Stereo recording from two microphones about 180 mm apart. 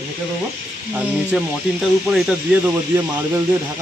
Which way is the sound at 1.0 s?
5° right (ahead or behind).